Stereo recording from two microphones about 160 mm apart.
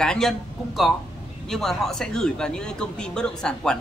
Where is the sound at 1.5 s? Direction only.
Centre (ahead or behind).